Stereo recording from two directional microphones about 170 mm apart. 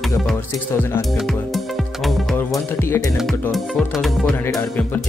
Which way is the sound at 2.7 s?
15° left (ahead or behind).